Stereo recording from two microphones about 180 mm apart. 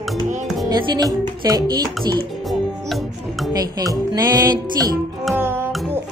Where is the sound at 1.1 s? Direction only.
20° right (ahead or behind).